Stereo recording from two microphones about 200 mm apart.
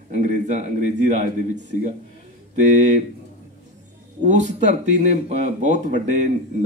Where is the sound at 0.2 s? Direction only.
35° right (ahead or behind).